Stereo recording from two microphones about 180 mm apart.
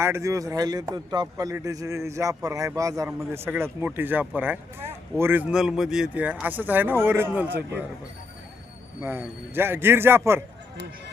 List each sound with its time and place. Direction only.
0.0 s speech: 15° right (ahead or behind)
9.0 s speech: 10° right (ahead or behind)